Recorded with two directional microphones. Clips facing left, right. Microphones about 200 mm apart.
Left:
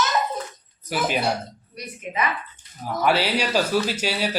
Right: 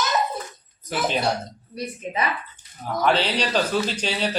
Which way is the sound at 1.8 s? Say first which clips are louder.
Right 1 dB; 30° right (ahead or behind).